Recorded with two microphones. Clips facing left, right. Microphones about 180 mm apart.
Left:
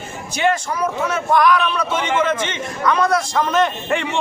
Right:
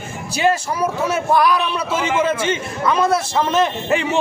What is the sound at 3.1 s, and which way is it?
Speech, 25° right (ahead or behind).